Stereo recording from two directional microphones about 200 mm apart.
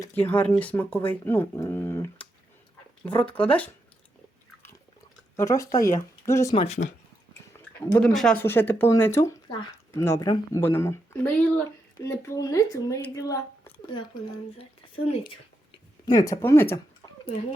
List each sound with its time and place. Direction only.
0.0 s speech: 10° left (ahead or behind)
5.4 s speech: 15° left (ahead or behind)
6.5 s speech: 30° left (ahead or behind)
7.6 s speech: 5° left (ahead or behind)
15.0 s speech: 30° left (ahead or behind)
16.0 s speech: 15° left (ahead or behind)